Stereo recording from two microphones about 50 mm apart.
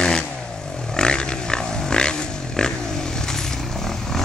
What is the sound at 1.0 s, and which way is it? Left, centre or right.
Pig, centre.